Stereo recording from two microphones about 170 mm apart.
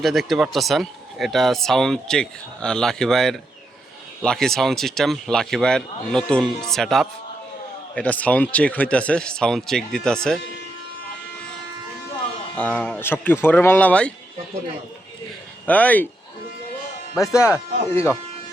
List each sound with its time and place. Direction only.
0.0 s speech: centre (ahead or behind)
12.5 s speech: 10° left (ahead or behind)
15.6 s speech: 10° left (ahead or behind)
17.2 s speech: 15° left (ahead or behind)